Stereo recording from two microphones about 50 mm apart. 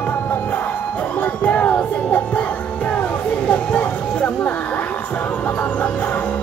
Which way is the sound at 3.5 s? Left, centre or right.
Left.